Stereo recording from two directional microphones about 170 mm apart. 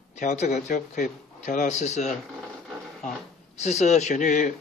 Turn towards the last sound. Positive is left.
turn(degrees=45)  # may be behind; listen again after turning